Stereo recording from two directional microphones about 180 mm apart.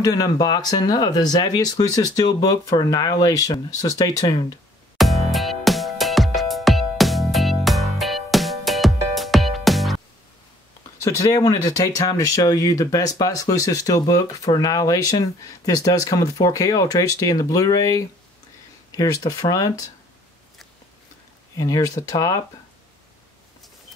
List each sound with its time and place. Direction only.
0.0 s speech: 20° left (ahead or behind)
4.9 s music: centre (ahead or behind)
11.0 s speech: 20° left (ahead or behind)
21.5 s speech: 20° left (ahead or behind)